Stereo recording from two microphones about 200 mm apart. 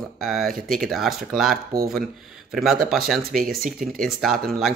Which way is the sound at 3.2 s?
50° right (ahead or behind).